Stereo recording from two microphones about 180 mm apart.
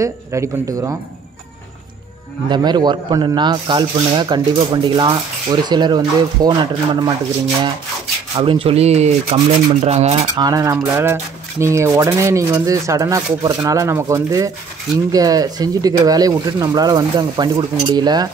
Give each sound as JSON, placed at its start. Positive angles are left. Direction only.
{"t": 0.0, "sound": "speech", "side_deg": -15}
{"t": 2.5, "sound": "speech", "side_deg": -25}
{"t": 8.4, "sound": "rub", "side_deg": -30}
{"t": 10.3, "sound": "speech", "side_deg": -20}